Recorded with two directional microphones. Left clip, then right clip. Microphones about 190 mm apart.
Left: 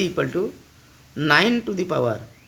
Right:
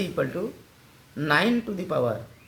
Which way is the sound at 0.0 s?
55° left (ahead or behind).